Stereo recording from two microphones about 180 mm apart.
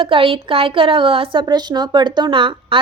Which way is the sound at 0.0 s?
30° right (ahead or behind).